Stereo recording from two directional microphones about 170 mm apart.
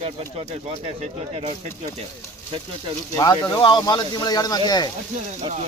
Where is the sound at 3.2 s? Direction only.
20° left (ahead or behind).